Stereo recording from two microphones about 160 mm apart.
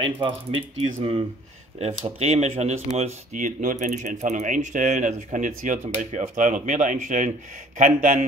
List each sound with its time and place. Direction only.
0.0 s speech: 35° right (ahead or behind); by 8.3 s 55° right (ahead or behind)